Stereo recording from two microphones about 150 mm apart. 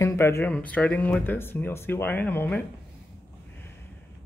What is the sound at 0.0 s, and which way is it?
Speech, 20° left (ahead or behind).